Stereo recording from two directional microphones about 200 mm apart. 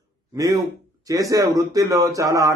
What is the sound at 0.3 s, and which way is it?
Speech, 20° right (ahead or behind).